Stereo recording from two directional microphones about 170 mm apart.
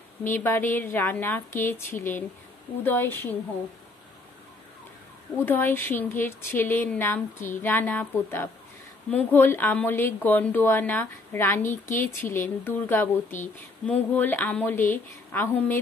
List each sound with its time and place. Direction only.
0.3 s speech: 10° left (ahead or behind)
5.4 s speech: 10° left (ahead or behind)
11.6 s speech: 50° left (ahead or behind)
12.0 s speech: 15° left (ahead or behind)